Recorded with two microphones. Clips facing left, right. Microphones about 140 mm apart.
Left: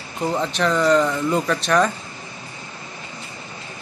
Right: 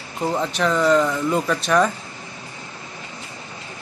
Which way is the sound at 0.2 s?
5° right (ahead or behind).